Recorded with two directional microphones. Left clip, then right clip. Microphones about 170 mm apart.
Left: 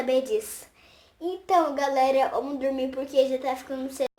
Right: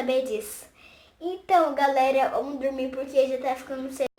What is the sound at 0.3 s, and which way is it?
A woman's voice, 30° left (ahead or behind).